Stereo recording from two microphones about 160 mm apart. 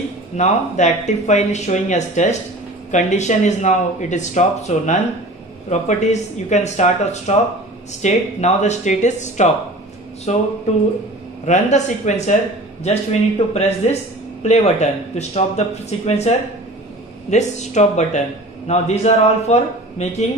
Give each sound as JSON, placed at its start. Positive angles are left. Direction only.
{"t": 0.4, "sound": "speech", "side_deg": 45}
{"t": 11.4, "sound": "speech", "side_deg": 45}